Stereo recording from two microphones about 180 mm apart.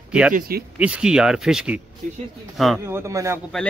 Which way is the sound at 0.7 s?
5° right (ahead or behind).